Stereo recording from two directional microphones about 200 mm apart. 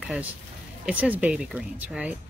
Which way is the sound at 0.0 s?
Centre (ahead or behind).